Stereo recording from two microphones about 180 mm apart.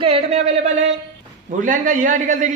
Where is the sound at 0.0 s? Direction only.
35° right (ahead or behind).